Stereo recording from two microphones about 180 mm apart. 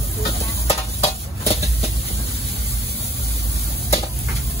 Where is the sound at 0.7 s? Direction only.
35° left (ahead or behind).